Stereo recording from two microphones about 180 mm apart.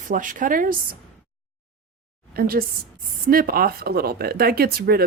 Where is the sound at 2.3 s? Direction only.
55° right (ahead or behind).